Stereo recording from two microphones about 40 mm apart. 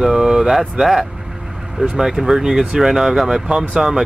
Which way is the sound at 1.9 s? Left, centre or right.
Centre.